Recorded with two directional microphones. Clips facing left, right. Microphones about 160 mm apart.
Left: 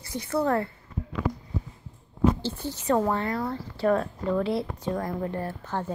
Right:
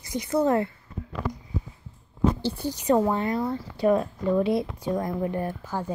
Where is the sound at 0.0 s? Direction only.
20° right (ahead or behind).